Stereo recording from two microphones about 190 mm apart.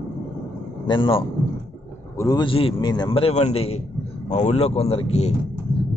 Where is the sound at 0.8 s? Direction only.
25° left (ahead or behind).